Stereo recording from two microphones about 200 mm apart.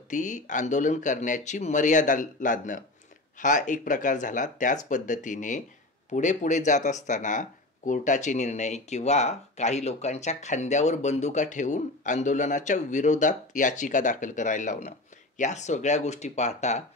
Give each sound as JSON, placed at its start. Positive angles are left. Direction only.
{"t": 0.1, "sound": "speech", "side_deg": 40}